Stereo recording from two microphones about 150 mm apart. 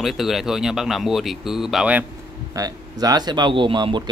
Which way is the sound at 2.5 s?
25° right (ahead or behind).